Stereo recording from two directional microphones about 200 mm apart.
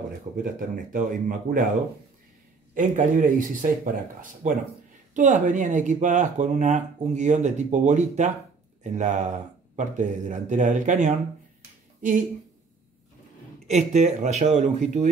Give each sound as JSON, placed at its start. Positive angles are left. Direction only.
{"t": 0.4, "sound": "speech", "side_deg": -45}
{"t": 2.7, "sound": "speech", "side_deg": -40}
{"t": 13.7, "sound": "speech", "side_deg": -35}